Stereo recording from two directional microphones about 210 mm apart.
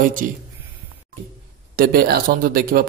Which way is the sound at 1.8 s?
45° right (ahead or behind).